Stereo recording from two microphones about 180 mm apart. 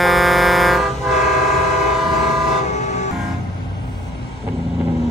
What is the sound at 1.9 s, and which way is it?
Train, centre (ahead or behind).